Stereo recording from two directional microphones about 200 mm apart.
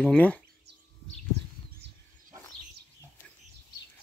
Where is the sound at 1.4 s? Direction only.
60° right (ahead or behind).